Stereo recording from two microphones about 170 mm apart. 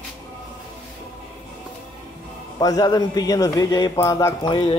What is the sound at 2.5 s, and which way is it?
Speech, 20° left (ahead or behind).